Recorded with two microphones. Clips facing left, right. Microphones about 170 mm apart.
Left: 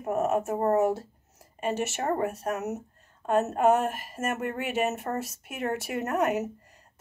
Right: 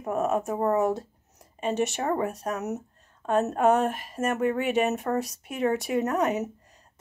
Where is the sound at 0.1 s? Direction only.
5° left (ahead or behind).